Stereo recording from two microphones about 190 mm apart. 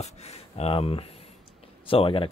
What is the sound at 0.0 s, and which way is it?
Speech, 35° left (ahead or behind).